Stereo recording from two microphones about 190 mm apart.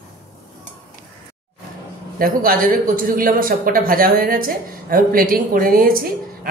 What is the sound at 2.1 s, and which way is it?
A woman's voice, 50° right (ahead or behind).